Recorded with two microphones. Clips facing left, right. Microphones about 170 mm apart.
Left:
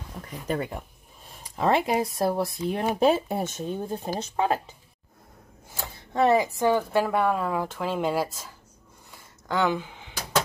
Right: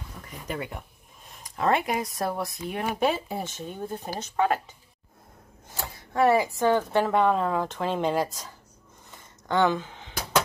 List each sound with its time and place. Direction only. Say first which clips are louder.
0.5 s speech: left 5 dB; 35° left (ahead or behind)
1.4 s a sound: left 1 dB; 5° left (ahead or behind)
1.8 s speech: left 4 dB; 30° left (ahead or behind)
3.2 s speech: left 4 dB; 60° left (ahead or behind)
3.5 s speech: left 4 dB; 30° left (ahead or behind)
5.9 s a woman's voice: even; 20° left (ahead or behind); by 8.3 s 5° left (ahead or behind)
9.1 s a sound: right 2 dB; 5° left (ahead or behind)